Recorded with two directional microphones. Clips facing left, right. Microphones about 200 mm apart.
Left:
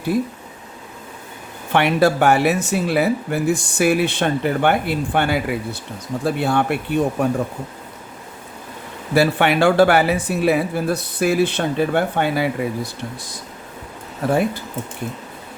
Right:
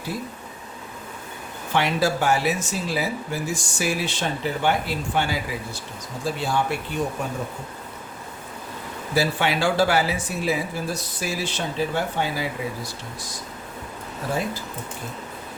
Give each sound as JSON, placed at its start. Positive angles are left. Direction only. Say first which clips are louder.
{"t": 1.7, "sound": "speech", "louder": "left 6 dB", "side_deg": 60}
{"t": 9.1, "sound": "speech", "louder": "left 7 dB", "side_deg": 60}
{"t": 14.2, "sound": "speech", "louder": "left 9 dB", "side_deg": 60}